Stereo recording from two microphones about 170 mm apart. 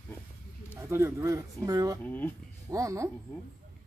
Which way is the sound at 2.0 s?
10° left (ahead or behind).